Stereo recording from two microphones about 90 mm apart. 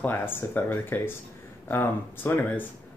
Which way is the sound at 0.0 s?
25° left (ahead or behind).